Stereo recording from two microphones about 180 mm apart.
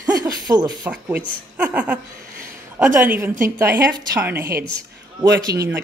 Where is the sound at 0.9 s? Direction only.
5° right (ahead or behind).